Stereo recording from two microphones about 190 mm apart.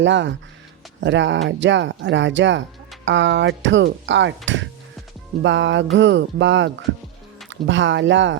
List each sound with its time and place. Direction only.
0.0 s speech: 75° right (ahead or behind)